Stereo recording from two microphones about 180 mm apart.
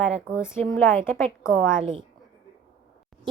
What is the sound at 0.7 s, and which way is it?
Speech, 10° left (ahead or behind).